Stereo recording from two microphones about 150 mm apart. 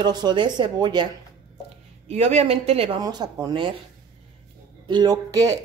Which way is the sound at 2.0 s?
45° right (ahead or behind).